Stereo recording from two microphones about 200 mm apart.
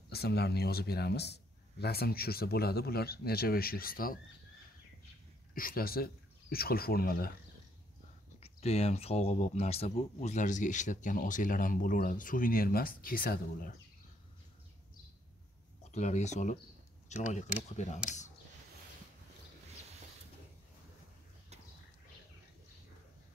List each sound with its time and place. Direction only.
0.1 s a man's voice: 55° left (ahead or behind)
5.5 s speech: 45° left (ahead or behind)
8.4 s speech: 30° left (ahead or behind)
15.8 s speech: 35° left (ahead or behind)